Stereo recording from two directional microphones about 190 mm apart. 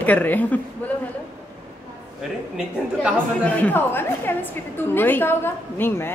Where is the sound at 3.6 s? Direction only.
10° left (ahead or behind).